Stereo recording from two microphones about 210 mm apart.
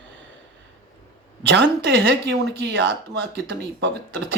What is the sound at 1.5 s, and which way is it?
Speech, 60° right (ahead or behind).